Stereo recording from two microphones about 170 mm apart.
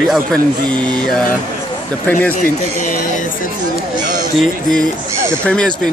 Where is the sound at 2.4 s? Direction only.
50° left (ahead or behind).